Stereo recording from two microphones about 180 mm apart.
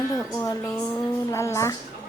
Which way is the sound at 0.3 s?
15° left (ahead or behind).